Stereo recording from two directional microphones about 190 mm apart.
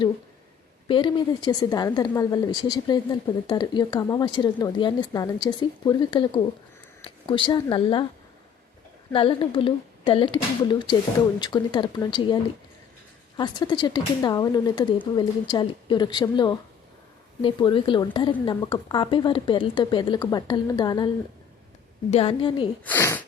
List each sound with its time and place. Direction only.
0.9 s a woman's voice: 25° left (ahead or behind)
9.1 s a woman's voice: 30° left (ahead or behind)
22.1 s a woman's voice: 30° left (ahead or behind)
22.8 s speech: 10° left (ahead or behind)